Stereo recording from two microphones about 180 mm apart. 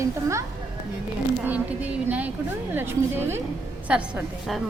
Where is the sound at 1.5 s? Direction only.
10° right (ahead or behind).